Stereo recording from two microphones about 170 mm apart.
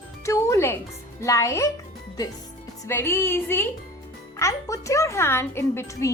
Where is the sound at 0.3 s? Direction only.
15° left (ahead or behind).